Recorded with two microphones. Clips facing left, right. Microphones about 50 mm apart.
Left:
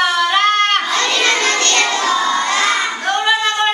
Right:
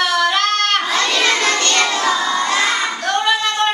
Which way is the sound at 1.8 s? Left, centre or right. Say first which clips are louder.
Left 1 dB; centre.